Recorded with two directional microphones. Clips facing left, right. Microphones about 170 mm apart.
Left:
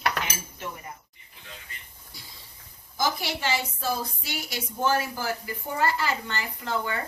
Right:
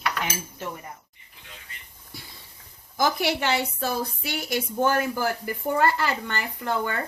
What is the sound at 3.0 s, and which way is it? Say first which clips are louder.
A woman's voice: right 5 dB; 60° right (ahead or behind).